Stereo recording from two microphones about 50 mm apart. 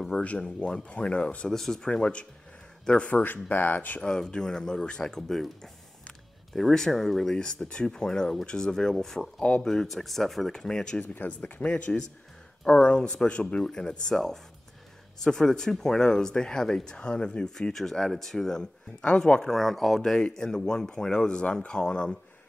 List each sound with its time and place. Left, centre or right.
0.4 s speech: centre
1.5 s speech: centre; by 3.3 s left
3.3 s speech: left
4.0 s speech: centre
5.0 s speech: centre
9.4 s speech: left
9.7 s speech: centre
11.0 s speech: left
19.5 s speech: centre
20.0 s speech: centre